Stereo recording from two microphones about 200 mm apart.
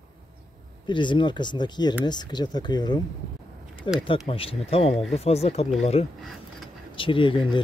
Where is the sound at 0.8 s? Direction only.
25° left (ahead or behind).